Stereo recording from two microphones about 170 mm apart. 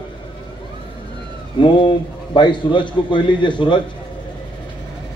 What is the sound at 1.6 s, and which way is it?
A man's voice, 30° left (ahead or behind).